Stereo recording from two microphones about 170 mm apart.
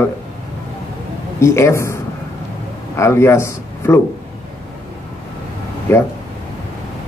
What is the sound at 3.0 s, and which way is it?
A man's voice, 15° left (ahead or behind).